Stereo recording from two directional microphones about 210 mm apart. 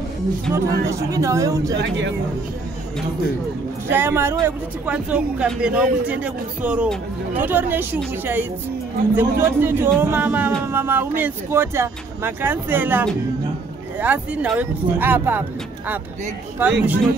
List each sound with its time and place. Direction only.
0.6 s speech: 15° right (ahead or behind)
1.8 s speech: 55° right (ahead or behind)
3.9 s speech: 10° right (ahead or behind)
16.6 s speech: 5° right (ahead or behind)